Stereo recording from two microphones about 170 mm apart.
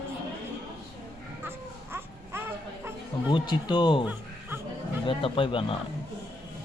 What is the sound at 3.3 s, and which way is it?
Speech, 25° left (ahead or behind).